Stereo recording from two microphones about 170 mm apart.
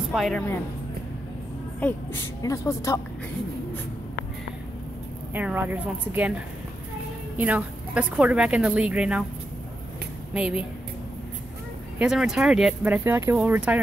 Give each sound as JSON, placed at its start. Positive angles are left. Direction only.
{"t": 0.1, "sound": "a woman's voice", "side_deg": 0}
{"t": 1.8, "sound": "a woman's voice", "side_deg": 5}
{"t": 2.4, "sound": "speech", "side_deg": 20}
{"t": 5.3, "sound": "a woman's voice", "side_deg": -10}
{"t": 7.3, "sound": "a woman's voice", "side_deg": -10}
{"t": 10.3, "sound": "speech", "side_deg": -5}
{"t": 12.0, "sound": "a woman's voice", "side_deg": -5}